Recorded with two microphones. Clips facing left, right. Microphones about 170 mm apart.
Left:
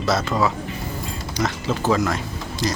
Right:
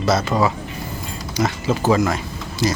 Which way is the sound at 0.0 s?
Centre (ahead or behind).